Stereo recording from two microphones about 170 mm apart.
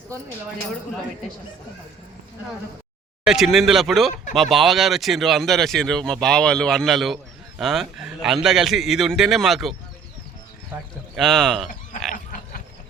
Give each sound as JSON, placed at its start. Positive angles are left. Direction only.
{"t": 3.2, "sound": "speech", "side_deg": 0}
{"t": 11.1, "sound": "speech", "side_deg": 0}
{"t": 12.1, "sound": "a sound", "side_deg": 55}